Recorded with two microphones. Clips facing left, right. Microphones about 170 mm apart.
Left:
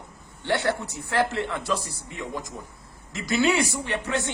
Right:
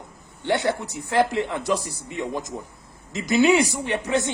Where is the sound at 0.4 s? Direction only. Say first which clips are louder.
Right 2 dB; 15° right (ahead or behind).